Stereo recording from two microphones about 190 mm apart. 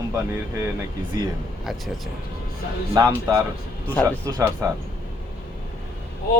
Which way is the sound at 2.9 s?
20° right (ahead or behind).